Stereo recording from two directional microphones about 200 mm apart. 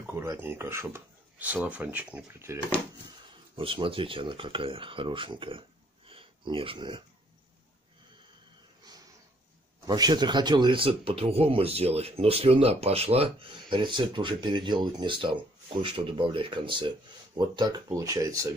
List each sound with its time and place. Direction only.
0.0 s speech: 10° right (ahead or behind)
3.5 s speech: 25° right (ahead or behind)
9.8 s speech: 20° right (ahead or behind)